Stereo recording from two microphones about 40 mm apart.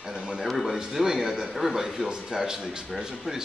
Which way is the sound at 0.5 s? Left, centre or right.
Centre.